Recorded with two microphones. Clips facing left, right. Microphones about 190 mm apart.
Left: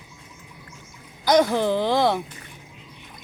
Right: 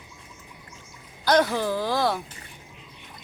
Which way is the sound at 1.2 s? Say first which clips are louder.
Left 3 dB; 15° left (ahead or behind).